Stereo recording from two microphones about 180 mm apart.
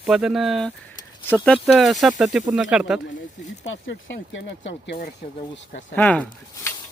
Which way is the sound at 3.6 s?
90° left.